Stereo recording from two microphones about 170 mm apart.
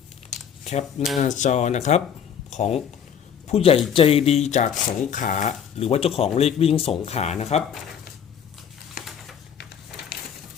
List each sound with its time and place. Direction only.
0.6 s a man's voice: 40° left (ahead or behind)